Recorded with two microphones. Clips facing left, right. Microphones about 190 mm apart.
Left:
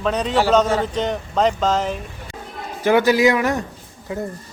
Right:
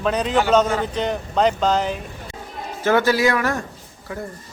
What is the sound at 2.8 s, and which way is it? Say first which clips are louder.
Speech: left 3 dB; 15° left (ahead or behind).